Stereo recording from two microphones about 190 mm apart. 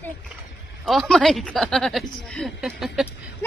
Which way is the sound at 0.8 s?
Centre (ahead or behind).